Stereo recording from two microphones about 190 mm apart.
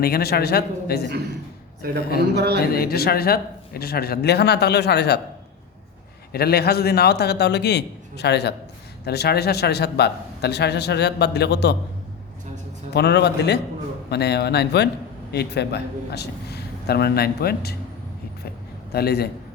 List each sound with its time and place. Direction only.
0.0 s speech: 55° left (ahead or behind)
1.8 s a man's voice: 55° right (ahead or behind)
2.7 s speech: 55° left (ahead or behind)
6.3 s speech: 55° left (ahead or behind)
12.9 s speech: 60° left (ahead or behind)
18.9 s a man's voice: 55° left (ahead or behind)